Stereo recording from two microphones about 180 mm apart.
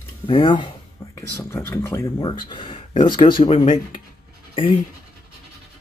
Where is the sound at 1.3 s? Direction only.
10° left (ahead or behind); by 4.0 s 35° left (ahead or behind).